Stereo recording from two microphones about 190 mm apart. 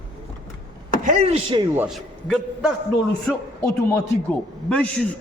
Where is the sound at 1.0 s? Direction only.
40° right (ahead or behind).